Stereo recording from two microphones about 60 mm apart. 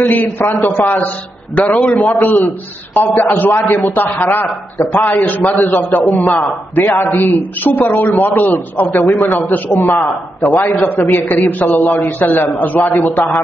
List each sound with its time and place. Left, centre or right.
0.0 s a man's voice: left